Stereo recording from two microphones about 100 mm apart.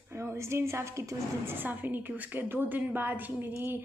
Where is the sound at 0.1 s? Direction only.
25° right (ahead or behind).